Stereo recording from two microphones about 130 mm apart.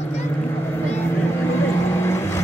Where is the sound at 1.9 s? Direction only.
20° left (ahead or behind).